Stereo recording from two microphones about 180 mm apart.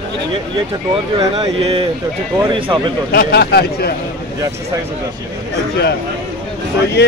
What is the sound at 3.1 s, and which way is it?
Speech, 60° left (ahead or behind).